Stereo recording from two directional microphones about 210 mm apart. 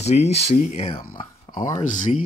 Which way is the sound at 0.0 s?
30° left (ahead or behind).